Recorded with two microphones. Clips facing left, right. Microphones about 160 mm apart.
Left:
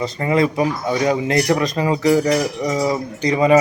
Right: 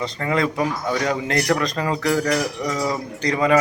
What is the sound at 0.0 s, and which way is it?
Speech, 15° left (ahead or behind).